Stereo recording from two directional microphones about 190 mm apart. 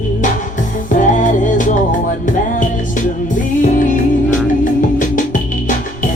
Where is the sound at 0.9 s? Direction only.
45° left (ahead or behind).